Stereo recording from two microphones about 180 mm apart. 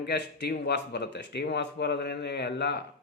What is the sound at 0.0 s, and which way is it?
Speech, 60° left (ahead or behind).